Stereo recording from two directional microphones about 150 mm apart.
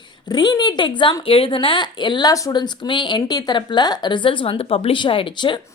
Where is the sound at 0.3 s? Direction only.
30° left (ahead or behind).